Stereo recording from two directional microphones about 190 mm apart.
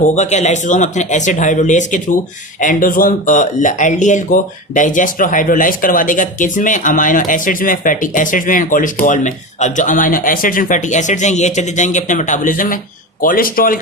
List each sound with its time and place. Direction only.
0.1 s speech: 35° left (ahead or behind)